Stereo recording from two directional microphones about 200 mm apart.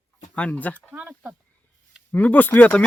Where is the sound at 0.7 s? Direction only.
10° right (ahead or behind).